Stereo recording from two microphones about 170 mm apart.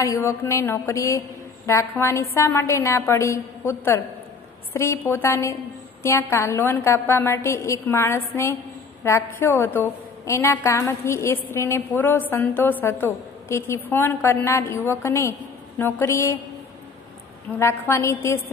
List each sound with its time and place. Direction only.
0.0 s a woman's voice: 15° left (ahead or behind)
17.6 s a woman's voice: 15° left (ahead or behind)